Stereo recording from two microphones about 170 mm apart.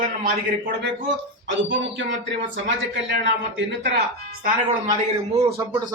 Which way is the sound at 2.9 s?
90° right.